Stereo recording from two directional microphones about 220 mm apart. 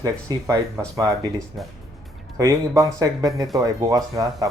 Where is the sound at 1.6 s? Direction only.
Centre (ahead or behind).